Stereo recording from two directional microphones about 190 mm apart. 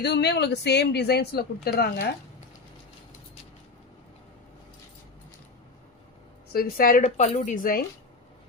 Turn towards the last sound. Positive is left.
turn(degrees=50)  # may be behind; listen again after turning